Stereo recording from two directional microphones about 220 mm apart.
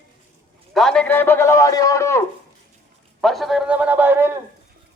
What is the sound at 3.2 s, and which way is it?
A man's voice, centre (ahead or behind).